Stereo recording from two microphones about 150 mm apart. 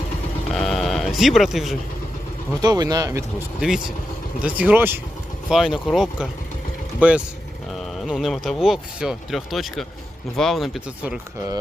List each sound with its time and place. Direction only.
0.5 s sheep: centre (ahead or behind)
2.6 s speech: 25° right (ahead or behind)
3.6 s speech: 5° right (ahead or behind)